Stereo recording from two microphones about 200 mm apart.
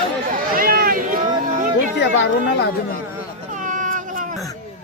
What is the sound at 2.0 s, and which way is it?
Speech, 60° left (ahead or behind).